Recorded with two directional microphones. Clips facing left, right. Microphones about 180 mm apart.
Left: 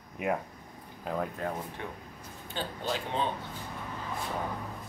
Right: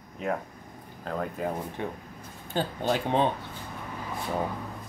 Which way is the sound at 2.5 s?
50° right (ahead or behind).